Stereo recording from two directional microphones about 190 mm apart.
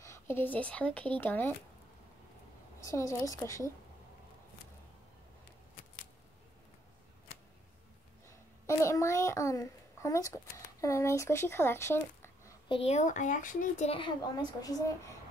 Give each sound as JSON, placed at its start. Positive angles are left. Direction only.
{"t": 0.0, "sound": "speech", "side_deg": 15}
{"t": 2.8, "sound": "speech", "side_deg": 15}
{"t": 8.6, "sound": "a sound", "side_deg": 15}
{"t": 12.6, "sound": "speech", "side_deg": 30}